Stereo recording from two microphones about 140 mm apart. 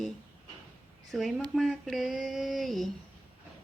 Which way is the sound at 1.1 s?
Centre (ahead or behind).